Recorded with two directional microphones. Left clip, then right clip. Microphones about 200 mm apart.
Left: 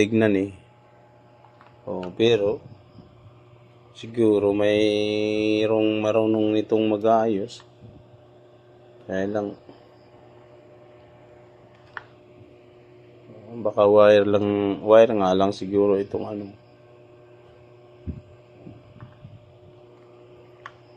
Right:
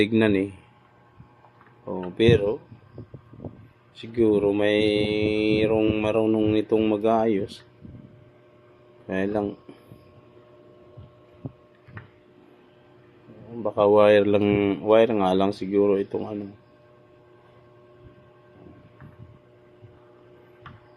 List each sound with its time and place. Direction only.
0.0 s a man's voice: 5° right (ahead or behind)
2.1 s mantra: 10° right (ahead or behind)
4.0 s mantra: 5° right (ahead or behind)
9.0 s speech: 20° right (ahead or behind)
13.6 s mantra: 5° right (ahead or behind)
14.5 s speech: 20° right (ahead or behind)
14.8 s mantra: 10° right (ahead or behind)